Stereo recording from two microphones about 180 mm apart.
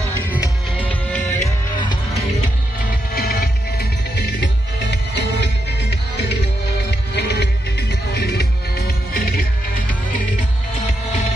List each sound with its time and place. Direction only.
0.7 s music: 10° left (ahead or behind)
3.2 s music: 60° left (ahead or behind)
4.9 s music: 70° left (ahead or behind)